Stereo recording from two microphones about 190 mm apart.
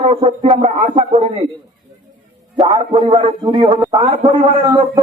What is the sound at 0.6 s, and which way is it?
Music, 40° right (ahead or behind).